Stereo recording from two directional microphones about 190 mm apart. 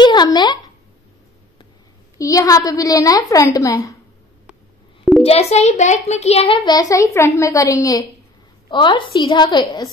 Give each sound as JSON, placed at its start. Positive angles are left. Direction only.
{"t": 0.0, "sound": "speech", "side_deg": 25}
{"t": 2.1, "sound": "a woman's voice", "side_deg": 15}
{"t": 5.2, "sound": "a child's voice", "side_deg": 35}